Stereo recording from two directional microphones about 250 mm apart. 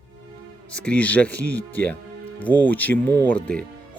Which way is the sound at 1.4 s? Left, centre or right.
Right.